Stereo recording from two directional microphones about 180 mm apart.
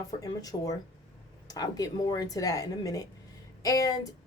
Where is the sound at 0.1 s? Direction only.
20° left (ahead or behind).